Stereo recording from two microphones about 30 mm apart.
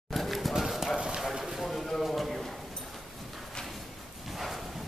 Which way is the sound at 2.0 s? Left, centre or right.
Centre.